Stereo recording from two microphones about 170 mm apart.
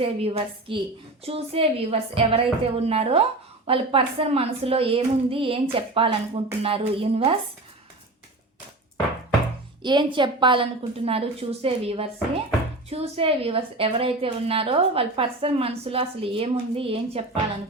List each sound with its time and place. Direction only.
0.0 s a woman's voice: 35° right (ahead or behind)
9.8 s a woman's voice: 25° right (ahead or behind)